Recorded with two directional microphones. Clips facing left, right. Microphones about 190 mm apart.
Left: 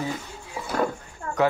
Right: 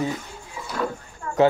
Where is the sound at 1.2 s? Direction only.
35° left (ahead or behind).